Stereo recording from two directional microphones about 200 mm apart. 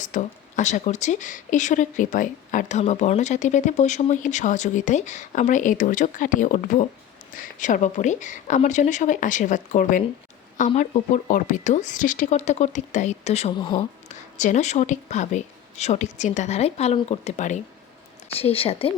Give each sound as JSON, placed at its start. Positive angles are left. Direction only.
{"t": 0.0, "sound": "speech", "side_deg": 40}
{"t": 13.5, "sound": "a woman's voice", "side_deg": 20}
{"t": 14.1, "sound": "a woman's voice", "side_deg": 35}